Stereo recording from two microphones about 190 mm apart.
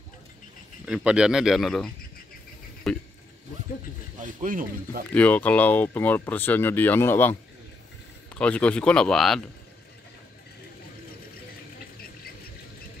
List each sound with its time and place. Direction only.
0.8 s speech: 5° right (ahead or behind)
4.2 s speech: 45° right (ahead or behind)
5.1 s speech: 10° left (ahead or behind)
8.4 s speech: 5° left (ahead or behind)